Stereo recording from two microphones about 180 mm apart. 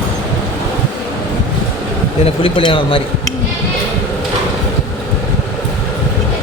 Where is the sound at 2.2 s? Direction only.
30° left (ahead or behind).